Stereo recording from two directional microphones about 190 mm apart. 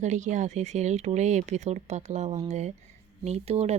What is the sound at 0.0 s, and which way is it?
Speech, 40° right (ahead or behind).